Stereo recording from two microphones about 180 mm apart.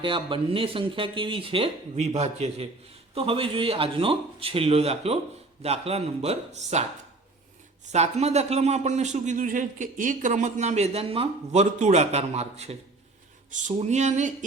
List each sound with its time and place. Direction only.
0.0 s speech: 30° right (ahead or behind)
7.9 s speech: 40° right (ahead or behind)